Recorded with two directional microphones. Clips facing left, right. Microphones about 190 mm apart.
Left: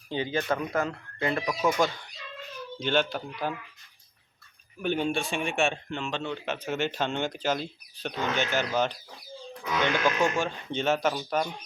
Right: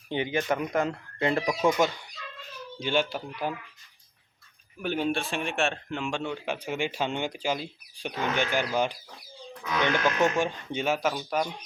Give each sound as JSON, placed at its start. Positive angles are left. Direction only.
{"t": 0.1, "sound": "speech", "side_deg": -20}
{"t": 2.8, "sound": "a man's voice", "side_deg": -10}
{"t": 4.8, "sound": "a man's voice", "side_deg": -5}
{"t": 10.2, "sound": "a man's voice", "side_deg": -15}